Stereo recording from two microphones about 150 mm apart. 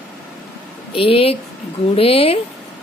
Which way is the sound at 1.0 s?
40° left (ahead or behind).